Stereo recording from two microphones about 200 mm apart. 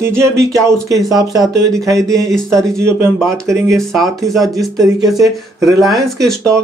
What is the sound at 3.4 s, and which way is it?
Speech, 15° right (ahead or behind).